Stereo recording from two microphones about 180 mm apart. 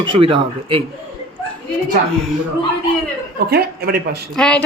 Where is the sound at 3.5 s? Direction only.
60° right (ahead or behind).